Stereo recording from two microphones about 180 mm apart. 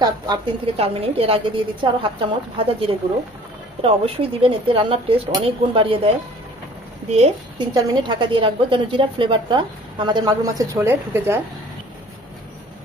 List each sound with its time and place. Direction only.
0.0 s a woman's voice: 30° right (ahead or behind)
7.5 s a woman's voice: 25° right (ahead or behind)